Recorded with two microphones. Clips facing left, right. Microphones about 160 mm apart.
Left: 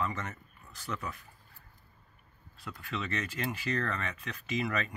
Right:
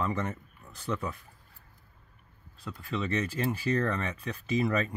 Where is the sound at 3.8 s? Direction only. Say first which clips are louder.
Right 5 dB; 30° right (ahead or behind).